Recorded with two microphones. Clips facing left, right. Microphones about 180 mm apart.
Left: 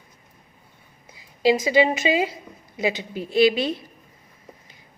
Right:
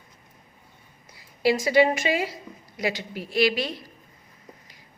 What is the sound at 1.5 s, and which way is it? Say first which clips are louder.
Speech: left 1 dB; 20° left (ahead or behind).